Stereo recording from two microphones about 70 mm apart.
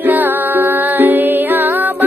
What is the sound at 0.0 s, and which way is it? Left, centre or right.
Music, right.